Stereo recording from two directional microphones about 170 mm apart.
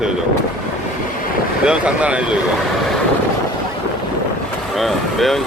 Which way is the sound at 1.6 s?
5° right (ahead or behind).